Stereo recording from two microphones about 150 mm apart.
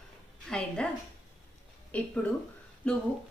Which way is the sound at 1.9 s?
10° left (ahead or behind).